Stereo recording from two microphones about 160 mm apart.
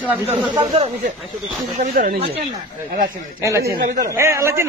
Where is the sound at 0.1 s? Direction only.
10° right (ahead or behind).